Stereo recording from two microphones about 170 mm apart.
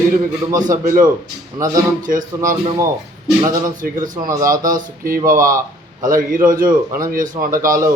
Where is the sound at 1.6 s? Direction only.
20° right (ahead or behind).